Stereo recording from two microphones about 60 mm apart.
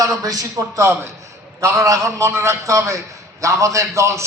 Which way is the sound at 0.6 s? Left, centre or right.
Right.